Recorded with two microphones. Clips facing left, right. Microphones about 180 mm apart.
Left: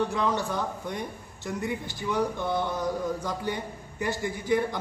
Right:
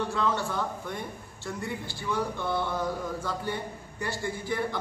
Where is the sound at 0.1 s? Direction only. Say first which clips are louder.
Left 1 dB; 15° left (ahead or behind).